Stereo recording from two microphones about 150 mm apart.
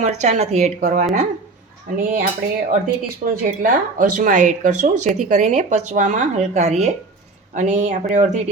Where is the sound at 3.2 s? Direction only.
65° right (ahead or behind).